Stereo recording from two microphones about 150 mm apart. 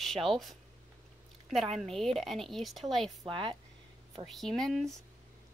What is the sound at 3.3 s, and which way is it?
Speech, 35° right (ahead or behind).